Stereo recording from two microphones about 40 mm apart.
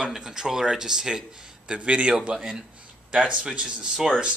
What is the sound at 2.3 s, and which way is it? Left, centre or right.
Speech, centre.